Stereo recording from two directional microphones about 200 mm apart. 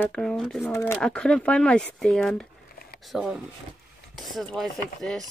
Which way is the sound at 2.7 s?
50° left (ahead or behind).